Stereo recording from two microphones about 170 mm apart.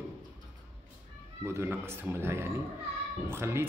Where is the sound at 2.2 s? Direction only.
15° right (ahead or behind).